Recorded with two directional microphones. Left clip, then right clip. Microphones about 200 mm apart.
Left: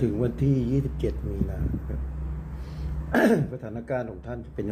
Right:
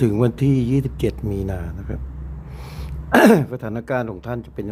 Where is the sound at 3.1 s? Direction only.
40° right (ahead or behind).